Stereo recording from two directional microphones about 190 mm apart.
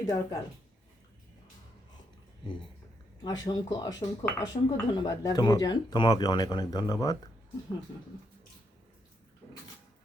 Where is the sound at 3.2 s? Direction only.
20° left (ahead or behind).